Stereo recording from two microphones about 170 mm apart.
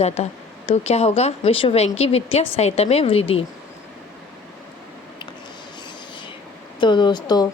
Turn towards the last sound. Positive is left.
turn(degrees=25)  # may be behind; listen again after turning